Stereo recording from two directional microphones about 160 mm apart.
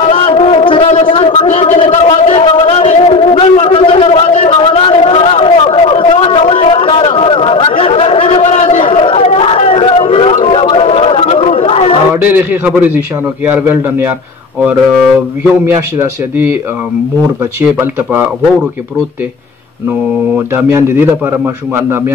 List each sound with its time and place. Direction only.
0.1 s a sound: 35° left (ahead or behind)
8.8 s chatter: 35° left (ahead or behind)
12.4 s a man's voice: 10° right (ahead or behind)
15.6 s a man's voice: 15° right (ahead or behind)
17.6 s a man's voice: 15° right (ahead or behind)
20.3 s a man's voice: 15° right (ahead or behind)